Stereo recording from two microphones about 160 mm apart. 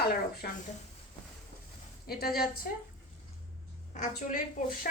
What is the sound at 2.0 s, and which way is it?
Speech, 70° left (ahead or behind).